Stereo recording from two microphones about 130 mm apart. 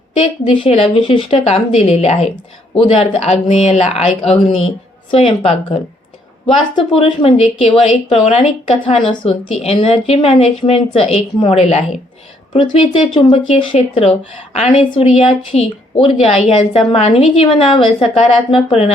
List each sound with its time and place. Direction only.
0.2 s a woman's voice: 45° left (ahead or behind)
6.7 s a woman's voice: 40° left (ahead or behind)
13.1 s a woman's voice: 45° left (ahead or behind)